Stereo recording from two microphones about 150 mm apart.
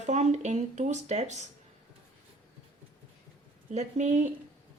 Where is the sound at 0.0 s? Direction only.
50° right (ahead or behind).